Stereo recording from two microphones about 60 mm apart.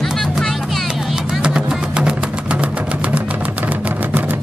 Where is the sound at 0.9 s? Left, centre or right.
Centre.